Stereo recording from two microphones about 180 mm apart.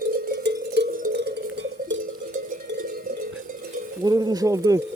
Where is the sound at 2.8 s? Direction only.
50° right (ahead or behind).